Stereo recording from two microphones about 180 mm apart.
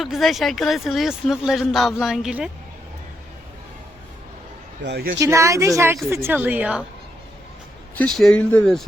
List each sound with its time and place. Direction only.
0.0 s speech: centre (ahead or behind)
4.8 s a man's voice: 70° right (ahead or behind)
5.2 s a woman's voice: 15° right (ahead or behind)
7.9 s speech: 5° left (ahead or behind)